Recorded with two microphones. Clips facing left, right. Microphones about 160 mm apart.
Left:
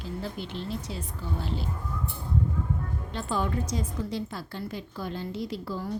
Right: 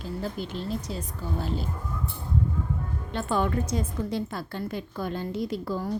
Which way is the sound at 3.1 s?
55° right (ahead or behind).